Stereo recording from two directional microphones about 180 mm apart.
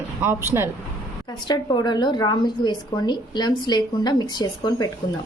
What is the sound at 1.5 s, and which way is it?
A woman's voice, 25° left (ahead or behind).